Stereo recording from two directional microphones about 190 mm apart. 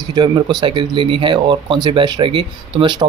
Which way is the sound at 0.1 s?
20° right (ahead or behind).